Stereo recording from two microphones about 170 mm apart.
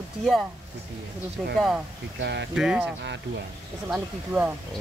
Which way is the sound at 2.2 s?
90° right.